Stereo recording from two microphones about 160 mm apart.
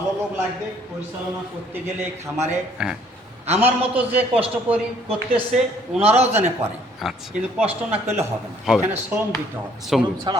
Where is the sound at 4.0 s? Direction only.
10° right (ahead or behind).